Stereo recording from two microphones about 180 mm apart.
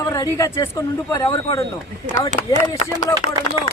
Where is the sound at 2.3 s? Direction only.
40° right (ahead or behind).